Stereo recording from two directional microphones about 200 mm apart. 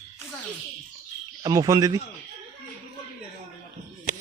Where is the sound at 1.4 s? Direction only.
15° right (ahead or behind).